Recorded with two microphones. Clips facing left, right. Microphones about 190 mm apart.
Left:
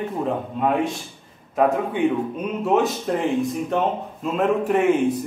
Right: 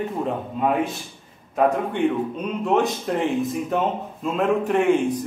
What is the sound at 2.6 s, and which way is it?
A man's voice, centre (ahead or behind).